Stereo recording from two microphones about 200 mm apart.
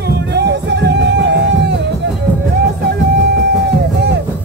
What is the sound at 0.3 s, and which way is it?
Music, 55° right (ahead or behind).